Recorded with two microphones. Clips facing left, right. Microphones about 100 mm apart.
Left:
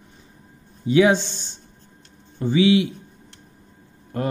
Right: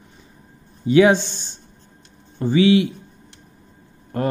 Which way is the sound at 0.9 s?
55° right (ahead or behind).